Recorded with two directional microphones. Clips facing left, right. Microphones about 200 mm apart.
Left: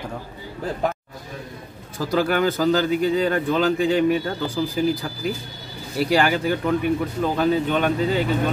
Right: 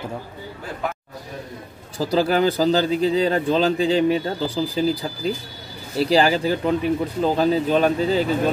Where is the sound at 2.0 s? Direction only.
30° right (ahead or behind).